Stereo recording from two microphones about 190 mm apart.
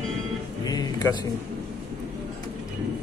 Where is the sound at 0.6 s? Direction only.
20° left (ahead or behind).